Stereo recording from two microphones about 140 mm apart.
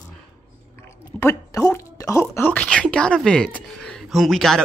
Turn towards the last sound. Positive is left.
turn(degrees=0)  # may be behind; listen again after turning